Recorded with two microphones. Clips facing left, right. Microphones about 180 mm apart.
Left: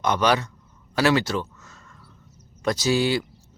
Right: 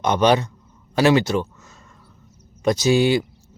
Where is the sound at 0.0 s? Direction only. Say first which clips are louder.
Right 4 dB; 20° right (ahead or behind).